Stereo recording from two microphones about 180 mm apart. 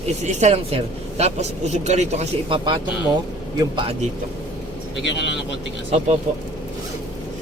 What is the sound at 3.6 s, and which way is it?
Speech, 25° right (ahead or behind).